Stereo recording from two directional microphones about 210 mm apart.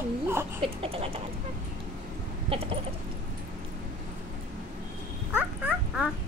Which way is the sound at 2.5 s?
25° right (ahead or behind).